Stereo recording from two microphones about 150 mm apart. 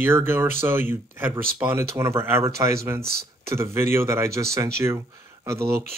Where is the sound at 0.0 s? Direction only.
15° right (ahead or behind).